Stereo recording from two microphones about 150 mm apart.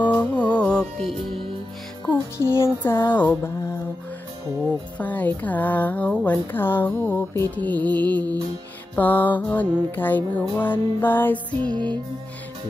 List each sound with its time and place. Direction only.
0.0 s music: 10° left (ahead or behind)
2.5 s music: 15° left (ahead or behind)
4.9 s music: 10° left (ahead or behind)